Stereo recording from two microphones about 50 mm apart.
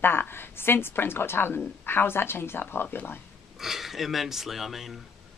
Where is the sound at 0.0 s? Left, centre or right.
Left.